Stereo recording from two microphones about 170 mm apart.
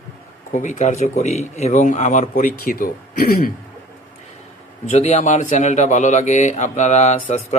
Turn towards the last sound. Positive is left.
turn(degrees=40)  # may be behind; listen again after turning